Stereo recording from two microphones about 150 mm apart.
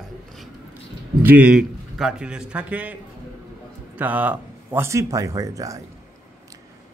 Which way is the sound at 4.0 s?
10° right (ahead or behind).